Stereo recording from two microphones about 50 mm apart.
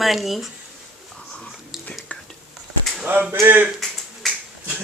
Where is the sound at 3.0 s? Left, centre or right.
Right.